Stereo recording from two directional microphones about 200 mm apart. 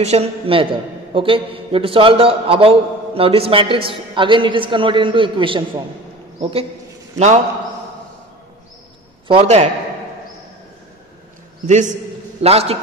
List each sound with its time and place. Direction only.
0.0 s a man's voice: 30° right (ahead or behind)
9.3 s a man's voice: 30° right (ahead or behind)
11.6 s a man's voice: 35° right (ahead or behind)